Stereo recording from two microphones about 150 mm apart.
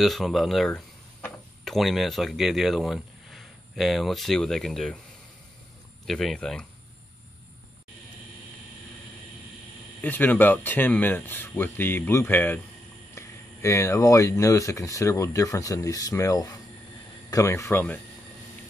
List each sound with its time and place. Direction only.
0.0 s speech: centre (ahead or behind)
6.0 s speech: centre (ahead or behind)
10.0 s speech: 10° left (ahead or behind)